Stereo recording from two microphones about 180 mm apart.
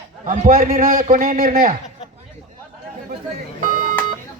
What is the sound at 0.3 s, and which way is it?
A man's voice, 45° right (ahead or behind).